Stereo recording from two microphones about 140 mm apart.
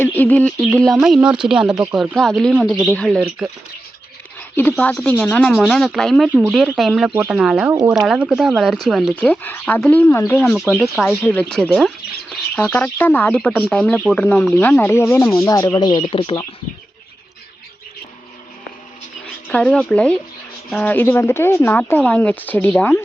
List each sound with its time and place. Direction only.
0.0 s speech: 10° left (ahead or behind)
0.9 s speech: 5° right (ahead or behind)
2.5 s speech: 5° right (ahead or behind)
2.9 s speech: 5° left (ahead or behind)
4.5 s speech: 15° left (ahead or behind)
6.2 s speech: 10° right (ahead or behind)
7.7 s speech: 25° right (ahead or behind)
7.9 s speech: centre (ahead or behind); by 10.2 s 15° left (ahead or behind)
10.4 s speech: centre (ahead or behind); by 16.4 s 40° left (ahead or behind)
19.5 s speech: 5° left (ahead or behind)